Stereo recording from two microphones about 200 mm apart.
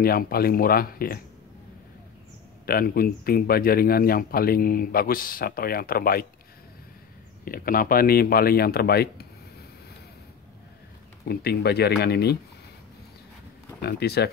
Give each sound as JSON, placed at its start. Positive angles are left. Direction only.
{"t": 0.0, "sound": "speech", "side_deg": 50}
{"t": 2.6, "sound": "speech", "side_deg": 50}
{"t": 7.4, "sound": "speech", "side_deg": 45}
{"t": 11.2, "sound": "speech", "side_deg": 55}
{"t": 13.7, "sound": "speech", "side_deg": 55}